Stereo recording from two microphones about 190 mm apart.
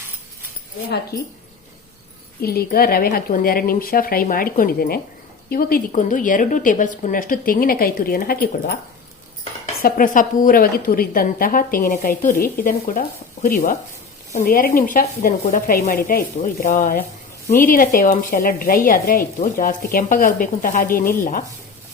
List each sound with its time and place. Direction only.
1.1 s speech: 55° left (ahead or behind)
2.4 s a woman's voice: 55° left (ahead or behind)
9.8 s a woman's voice: 45° left (ahead or behind)